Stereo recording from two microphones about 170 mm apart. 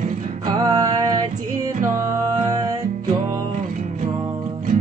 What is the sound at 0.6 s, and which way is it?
Music, 20° right (ahead or behind).